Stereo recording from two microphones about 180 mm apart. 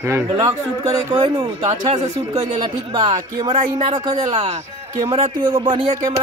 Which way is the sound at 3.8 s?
25° right (ahead or behind).